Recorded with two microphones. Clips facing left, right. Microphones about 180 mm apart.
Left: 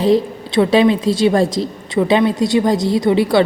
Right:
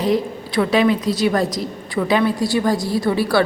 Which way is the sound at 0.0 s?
25° left (ahead or behind).